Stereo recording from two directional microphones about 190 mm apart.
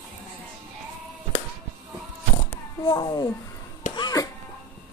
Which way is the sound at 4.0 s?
20° left (ahead or behind).